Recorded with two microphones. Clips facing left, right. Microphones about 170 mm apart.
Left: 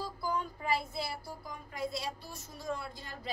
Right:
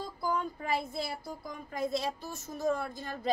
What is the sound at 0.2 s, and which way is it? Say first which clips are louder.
Child singing: right 4 dB; 50° right (ahead or behind).